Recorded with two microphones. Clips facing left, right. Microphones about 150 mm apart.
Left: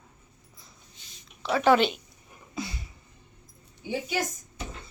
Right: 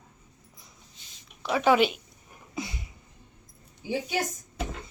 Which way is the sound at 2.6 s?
20° right (ahead or behind).